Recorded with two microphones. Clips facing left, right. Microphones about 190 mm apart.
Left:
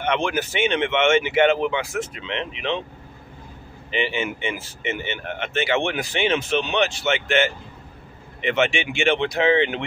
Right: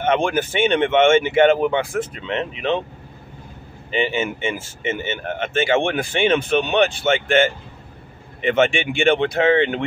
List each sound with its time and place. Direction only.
0.0 s speech: 45° right (ahead or behind)
3.9 s speech: 45° right (ahead or behind)